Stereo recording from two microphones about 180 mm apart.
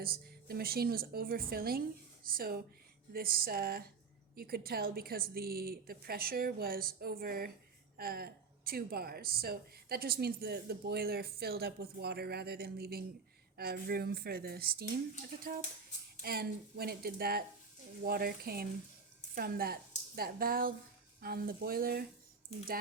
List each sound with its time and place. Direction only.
0.0 s speech: 55° right (ahead or behind)
16.2 s a woman's voice: 60° right (ahead or behind)